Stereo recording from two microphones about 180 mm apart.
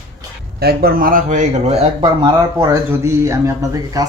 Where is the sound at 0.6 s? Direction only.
60° right (ahead or behind); by 4.0 s 20° right (ahead or behind).